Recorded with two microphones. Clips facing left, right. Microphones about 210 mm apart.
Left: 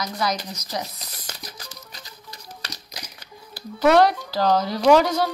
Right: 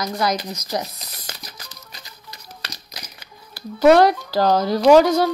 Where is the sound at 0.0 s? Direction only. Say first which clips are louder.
Right 4 dB; 45° right (ahead or behind).